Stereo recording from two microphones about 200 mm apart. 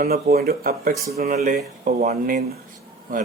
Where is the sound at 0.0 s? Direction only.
50° right (ahead or behind).